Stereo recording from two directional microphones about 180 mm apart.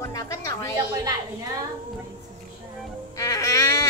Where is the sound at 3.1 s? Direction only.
20° left (ahead or behind).